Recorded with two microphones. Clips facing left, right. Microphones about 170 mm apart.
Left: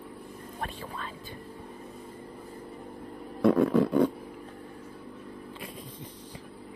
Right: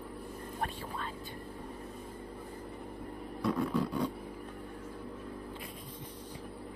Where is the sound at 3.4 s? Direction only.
55° left (ahead or behind).